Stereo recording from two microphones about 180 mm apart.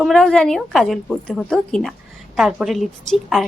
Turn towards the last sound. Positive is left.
turn(degrees=0)  # may be behind; listen again after turning